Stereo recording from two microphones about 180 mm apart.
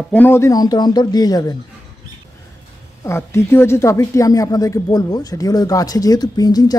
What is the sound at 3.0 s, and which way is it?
Speech, 15° left (ahead or behind).